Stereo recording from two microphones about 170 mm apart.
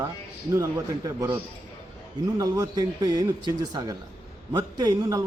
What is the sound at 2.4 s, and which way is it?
A man's voice, 20° right (ahead or behind).